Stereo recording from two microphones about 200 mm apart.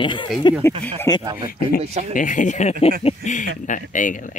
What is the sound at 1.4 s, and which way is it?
Speech, 45° left (ahead or behind).